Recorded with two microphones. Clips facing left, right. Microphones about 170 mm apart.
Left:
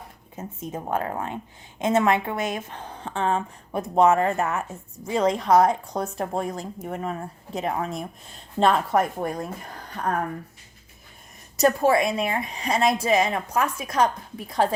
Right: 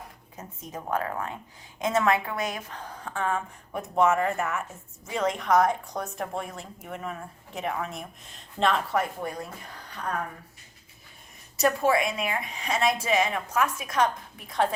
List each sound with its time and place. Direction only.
0.3 s a woman's voice: 25° left (ahead or behind); by 10.2 s 45° left (ahead or behind)
11.5 s a woman's voice: 40° left (ahead or behind)